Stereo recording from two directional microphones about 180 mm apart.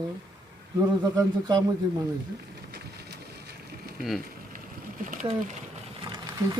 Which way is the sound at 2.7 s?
60° right (ahead or behind).